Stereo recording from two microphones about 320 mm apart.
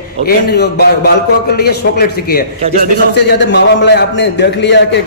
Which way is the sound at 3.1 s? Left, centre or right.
Left.